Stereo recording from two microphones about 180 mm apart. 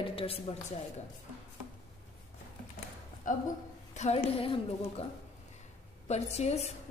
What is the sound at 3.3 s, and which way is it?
Speech, 45° left (ahead or behind).